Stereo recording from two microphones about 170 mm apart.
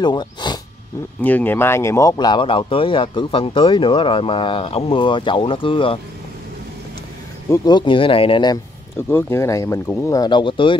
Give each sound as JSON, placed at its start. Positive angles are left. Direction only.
{"t": 0.0, "sound": "speech", "side_deg": 25}
{"t": 1.2, "sound": "speech", "side_deg": 10}
{"t": 7.4, "sound": "speech", "side_deg": 20}
{"t": 8.9, "sound": "speech", "side_deg": 15}